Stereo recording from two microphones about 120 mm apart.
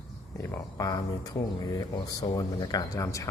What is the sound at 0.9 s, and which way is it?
Speech, 30° left (ahead or behind).